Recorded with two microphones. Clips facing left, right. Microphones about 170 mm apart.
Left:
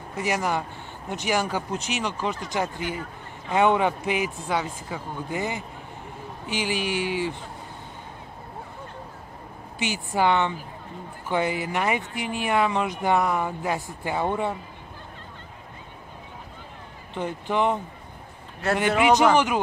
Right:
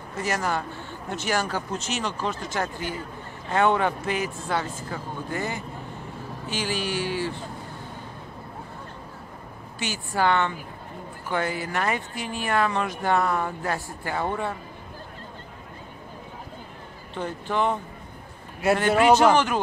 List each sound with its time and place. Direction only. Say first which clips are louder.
0.1 s speech: left 1 dB; 15° left (ahead or behind)
9.8 s speech: left 2 dB; 15° left (ahead or behind)
17.1 s speech: left 1 dB; 15° left (ahead or behind)
18.9 s speech: even; 15° left (ahead or behind)